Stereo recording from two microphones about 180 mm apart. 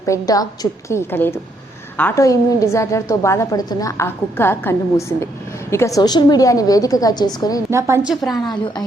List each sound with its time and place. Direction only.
0.0 s a woman's voice: 20° left (ahead or behind)
7.7 s a woman's voice: 15° right (ahead or behind)
8.0 s a woman's voice: centre (ahead or behind)
8.4 s a woman's voice: 25° left (ahead or behind)